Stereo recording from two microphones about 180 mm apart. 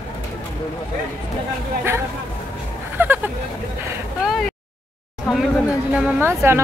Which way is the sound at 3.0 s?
10° right (ahead or behind).